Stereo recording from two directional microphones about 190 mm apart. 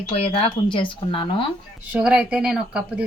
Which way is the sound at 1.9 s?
5° right (ahead or behind).